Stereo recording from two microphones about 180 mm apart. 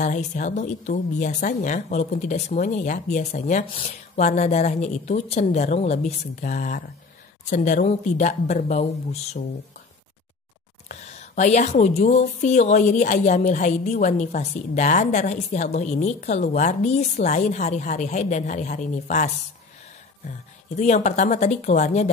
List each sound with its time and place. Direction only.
0.0 s a woman's voice: 45° left (ahead or behind)
10.9 s a woman's voice: 40° left (ahead or behind)